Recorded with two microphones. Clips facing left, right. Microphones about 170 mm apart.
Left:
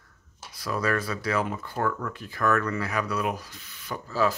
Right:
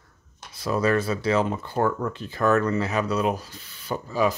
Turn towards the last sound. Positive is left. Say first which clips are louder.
# right 2 dB
turn(degrees=-15)  # may be behind; listen again after turning